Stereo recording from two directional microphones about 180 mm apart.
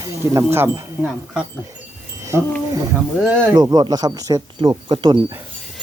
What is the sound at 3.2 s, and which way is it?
Speech, 10° right (ahead or behind).